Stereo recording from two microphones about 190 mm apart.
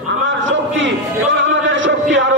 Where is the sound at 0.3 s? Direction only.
85° right.